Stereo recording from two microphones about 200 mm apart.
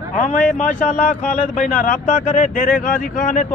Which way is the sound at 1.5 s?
35° left (ahead or behind).